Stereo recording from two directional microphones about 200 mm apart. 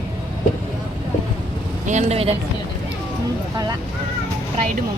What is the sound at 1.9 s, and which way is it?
Speech, 35° right (ahead or behind).